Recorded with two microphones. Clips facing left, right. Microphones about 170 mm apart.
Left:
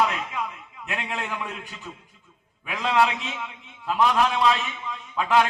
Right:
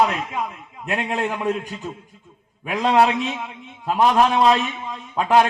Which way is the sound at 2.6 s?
40° right (ahead or behind).